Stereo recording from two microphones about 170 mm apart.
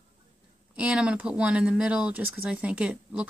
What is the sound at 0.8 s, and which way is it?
Speech, 5° right (ahead or behind).